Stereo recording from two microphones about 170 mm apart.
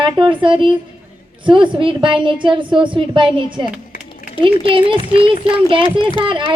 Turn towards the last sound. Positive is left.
turn(degrees=-30)  # may be behind; listen again after turning